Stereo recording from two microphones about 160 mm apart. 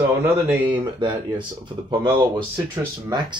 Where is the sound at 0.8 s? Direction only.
30° right (ahead or behind).